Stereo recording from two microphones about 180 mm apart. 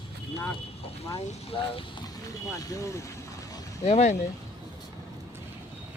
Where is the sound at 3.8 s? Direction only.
35° left (ahead or behind).